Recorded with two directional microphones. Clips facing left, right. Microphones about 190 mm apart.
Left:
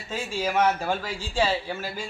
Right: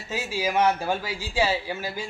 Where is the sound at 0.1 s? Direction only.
10° right (ahead or behind).